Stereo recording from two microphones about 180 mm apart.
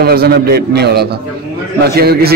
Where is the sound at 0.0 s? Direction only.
60° right (ahead or behind).